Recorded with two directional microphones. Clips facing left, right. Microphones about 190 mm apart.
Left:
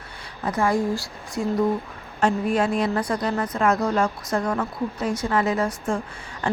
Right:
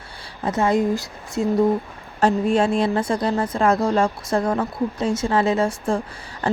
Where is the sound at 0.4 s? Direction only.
25° right (ahead or behind).